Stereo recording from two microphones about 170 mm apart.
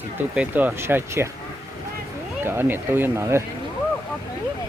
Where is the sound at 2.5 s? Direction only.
10° right (ahead or behind).